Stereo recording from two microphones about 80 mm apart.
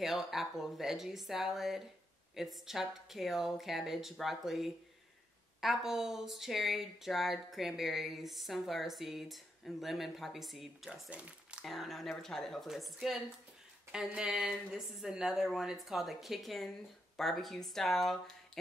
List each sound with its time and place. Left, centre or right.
0.0 s speech: centre
11.1 s speech: centre
11.6 s speech: centre
14.1 s speech: centre